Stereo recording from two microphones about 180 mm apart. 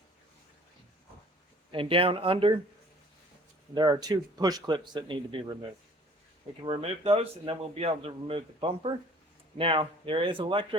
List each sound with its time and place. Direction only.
1.7 s a man's voice: 30° right (ahead or behind)
3.8 s speech: 25° right (ahead or behind)
6.7 s a man's voice: 35° right (ahead or behind)